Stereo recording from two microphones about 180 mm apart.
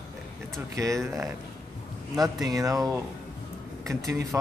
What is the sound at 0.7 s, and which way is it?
Speech, 15° right (ahead or behind).